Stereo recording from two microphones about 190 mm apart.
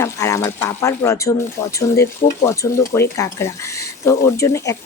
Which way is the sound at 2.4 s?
15° left (ahead or behind).